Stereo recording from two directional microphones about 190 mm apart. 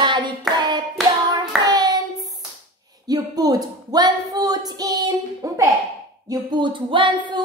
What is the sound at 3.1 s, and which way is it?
Speech, 20° right (ahead or behind).